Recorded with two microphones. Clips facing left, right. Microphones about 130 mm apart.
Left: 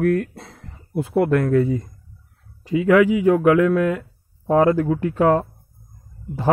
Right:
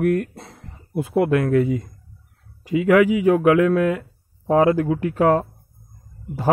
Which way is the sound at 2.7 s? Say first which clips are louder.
Even; 35° left (ahead or behind).